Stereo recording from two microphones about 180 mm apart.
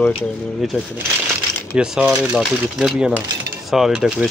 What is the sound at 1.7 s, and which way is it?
Speech, 5° right (ahead or behind).